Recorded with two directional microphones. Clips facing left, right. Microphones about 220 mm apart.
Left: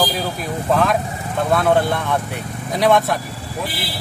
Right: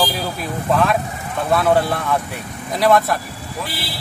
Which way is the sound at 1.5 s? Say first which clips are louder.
Even; 5° right (ahead or behind).